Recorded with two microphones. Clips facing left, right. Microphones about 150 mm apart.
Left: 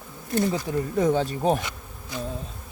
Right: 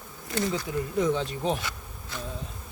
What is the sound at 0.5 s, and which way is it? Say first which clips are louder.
Speech: left 3 dB; 45° left (ahead or behind).